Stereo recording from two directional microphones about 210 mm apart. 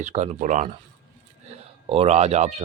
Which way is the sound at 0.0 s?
30° right (ahead or behind).